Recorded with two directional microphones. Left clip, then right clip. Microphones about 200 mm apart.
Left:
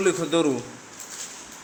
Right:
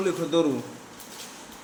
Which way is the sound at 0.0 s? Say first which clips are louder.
Left 2 dB; 20° left (ahead or behind).